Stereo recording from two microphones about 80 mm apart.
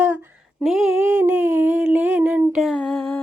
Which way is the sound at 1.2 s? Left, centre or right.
Right.